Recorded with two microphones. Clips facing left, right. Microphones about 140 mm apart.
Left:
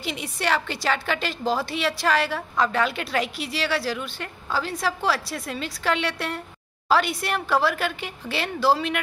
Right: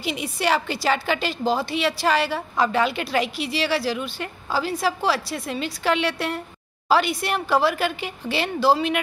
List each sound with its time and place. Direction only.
0.0 s a woman's voice: 5° right (ahead or behind)